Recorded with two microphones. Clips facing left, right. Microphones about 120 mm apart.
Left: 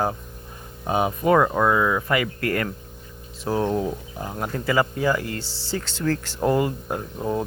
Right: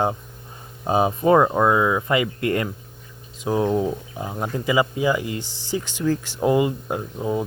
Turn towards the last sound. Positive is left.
turn(degrees=-5)  # may be behind; listen again after turning